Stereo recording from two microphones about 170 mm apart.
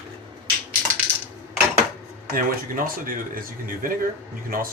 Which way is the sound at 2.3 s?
55° right (ahead or behind).